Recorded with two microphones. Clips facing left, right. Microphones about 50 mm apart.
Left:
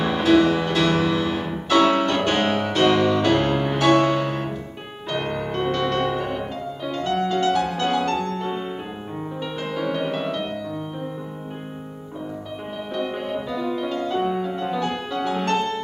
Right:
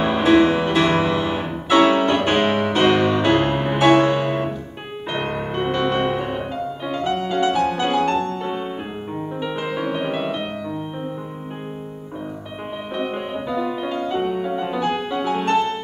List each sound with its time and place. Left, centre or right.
0.0 s music: right
12.9 s music: right